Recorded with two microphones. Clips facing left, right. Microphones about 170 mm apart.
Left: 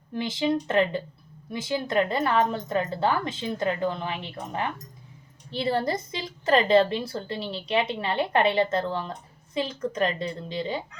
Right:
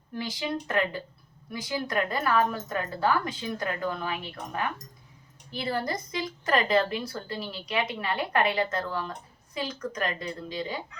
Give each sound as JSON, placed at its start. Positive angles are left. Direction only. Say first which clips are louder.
{"t": 0.1, "sound": "a woman's voice", "louder": "left 6 dB", "side_deg": 25}